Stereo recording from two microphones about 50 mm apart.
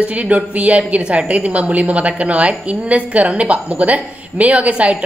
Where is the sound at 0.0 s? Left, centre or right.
Right.